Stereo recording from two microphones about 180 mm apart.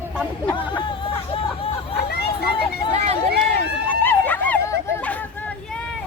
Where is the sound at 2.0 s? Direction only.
60° left (ahead or behind).